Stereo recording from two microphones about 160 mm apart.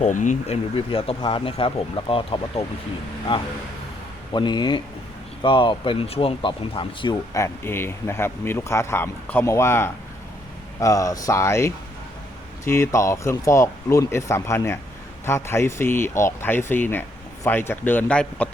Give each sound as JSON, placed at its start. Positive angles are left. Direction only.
{"t": 0.0, "sound": "speech", "side_deg": 50}
{"t": 4.3, "sound": "speech", "side_deg": 30}
{"t": 7.3, "sound": "speech", "side_deg": 15}